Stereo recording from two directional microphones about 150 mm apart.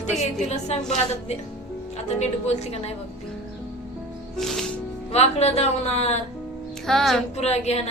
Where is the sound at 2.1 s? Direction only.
50° left (ahead or behind).